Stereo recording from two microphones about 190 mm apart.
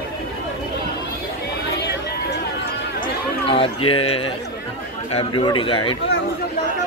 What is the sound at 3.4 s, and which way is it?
Speech, 30° left (ahead or behind).